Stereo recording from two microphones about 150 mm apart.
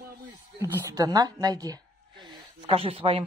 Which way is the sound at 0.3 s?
20° right (ahead or behind).